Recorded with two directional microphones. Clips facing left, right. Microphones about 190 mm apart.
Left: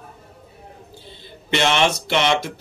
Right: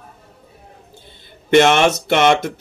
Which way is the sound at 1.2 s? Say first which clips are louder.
Right 9 dB; 50° right (ahead or behind).